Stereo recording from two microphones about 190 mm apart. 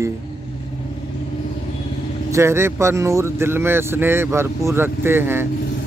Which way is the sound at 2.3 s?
15° right (ahead or behind).